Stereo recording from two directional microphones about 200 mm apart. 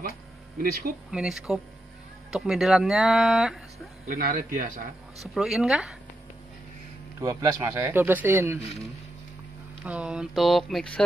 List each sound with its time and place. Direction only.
0.6 s speech: 45° right (ahead or behind)
1.1 s speech: 5° right (ahead or behind)
4.1 s speech: 45° right (ahead or behind)
5.3 s speech: centre (ahead or behind)
7.2 s speech: 15° right (ahead or behind)
8.5 s speech: 30° left (ahead or behind)
9.8 s speech: 5° right (ahead or behind)